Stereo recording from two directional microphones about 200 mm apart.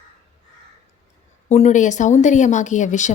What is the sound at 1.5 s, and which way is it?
A woman's voice, 35° left (ahead or behind).